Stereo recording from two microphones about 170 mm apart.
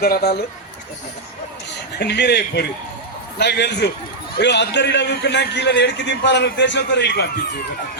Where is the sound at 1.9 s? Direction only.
80° left.